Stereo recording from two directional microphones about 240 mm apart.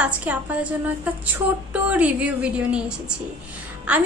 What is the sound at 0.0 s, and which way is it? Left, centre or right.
A woman's voice, centre.